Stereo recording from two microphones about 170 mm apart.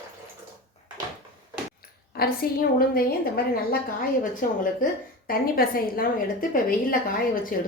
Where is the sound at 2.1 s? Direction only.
65° left (ahead or behind).